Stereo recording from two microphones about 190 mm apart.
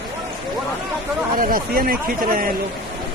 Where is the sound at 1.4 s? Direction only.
50° right (ahead or behind).